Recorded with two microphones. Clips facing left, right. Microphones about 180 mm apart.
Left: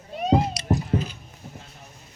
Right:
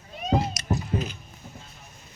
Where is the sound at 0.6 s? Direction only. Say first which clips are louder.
Left 5 dB; 30° left (ahead or behind).